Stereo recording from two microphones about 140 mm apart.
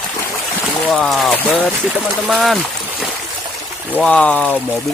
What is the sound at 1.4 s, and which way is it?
Speech, 15° left (ahead or behind).